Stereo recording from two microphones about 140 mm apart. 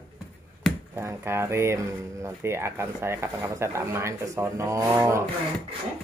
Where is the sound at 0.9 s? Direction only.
20° right (ahead or behind).